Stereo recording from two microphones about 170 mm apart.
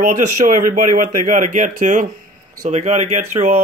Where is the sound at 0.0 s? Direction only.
50° right (ahead or behind).